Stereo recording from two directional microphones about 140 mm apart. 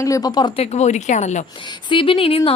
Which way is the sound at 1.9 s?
40° left (ahead or behind).